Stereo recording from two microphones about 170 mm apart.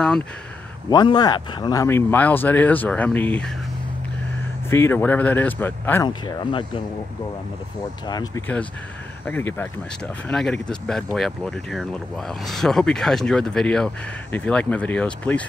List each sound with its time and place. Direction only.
0.8 s speech: 25° left (ahead or behind); by 3.5 s 10° left (ahead or behind)
4.6 s speech: 15° left (ahead or behind)
6.0 s speech: 25° left (ahead or behind)
8.1 s speech: 20° left (ahead or behind)
9.2 s speech: 10° left (ahead or behind)